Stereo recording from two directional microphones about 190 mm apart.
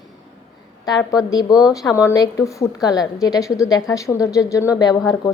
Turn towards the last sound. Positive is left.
turn(degrees=20)  # may be behind; listen again after turning